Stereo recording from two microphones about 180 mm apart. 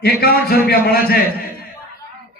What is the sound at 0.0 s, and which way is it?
Speech, 60° left (ahead or behind).